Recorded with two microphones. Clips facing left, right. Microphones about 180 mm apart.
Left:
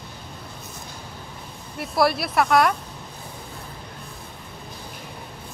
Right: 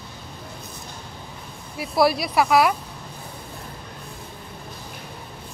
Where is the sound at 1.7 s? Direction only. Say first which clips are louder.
Right 2 dB; centre (ahead or behind).